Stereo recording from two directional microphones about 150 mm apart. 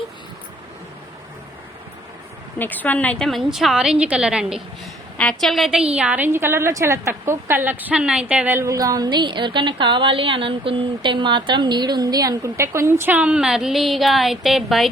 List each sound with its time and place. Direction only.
2.6 s a woman's voice: 10° left (ahead or behind); by 4.6 s 5° right (ahead or behind)
5.1 s a woman's voice: 5° left (ahead or behind)
6.0 s a woman's voice: 10° right (ahead or behind)